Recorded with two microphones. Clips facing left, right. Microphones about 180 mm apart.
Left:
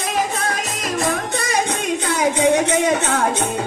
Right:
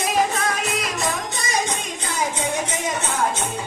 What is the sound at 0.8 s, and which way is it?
Music, 50° left (ahead or behind).